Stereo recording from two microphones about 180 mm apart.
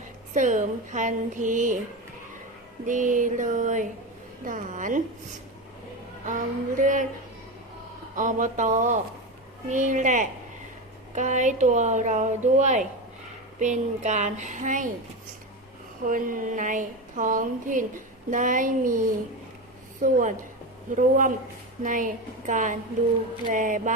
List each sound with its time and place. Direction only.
0.3 s a woman's voice: 45° right (ahead or behind)
2.8 s a woman's voice: 45° right (ahead or behind)
6.2 s a woman's voice: 45° right (ahead or behind)
8.1 s a woman's voice: 45° right (ahead or behind)
16.0 s a woman's voice: 50° right (ahead or behind)